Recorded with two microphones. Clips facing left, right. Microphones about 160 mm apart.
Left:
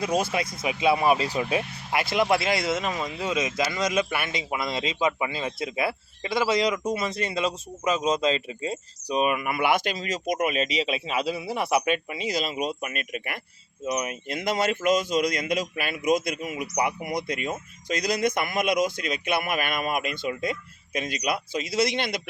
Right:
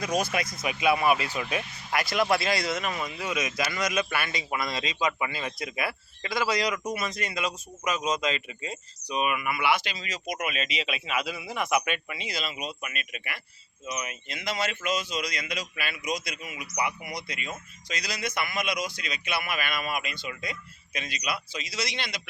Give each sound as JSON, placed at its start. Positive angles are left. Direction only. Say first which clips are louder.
{"t": 0.0, "sound": "a man's voice", "louder": "left 3 dB", "side_deg": 30}